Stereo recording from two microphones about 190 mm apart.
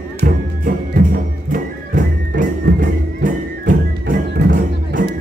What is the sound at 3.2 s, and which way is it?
Music, 45° right (ahead or behind).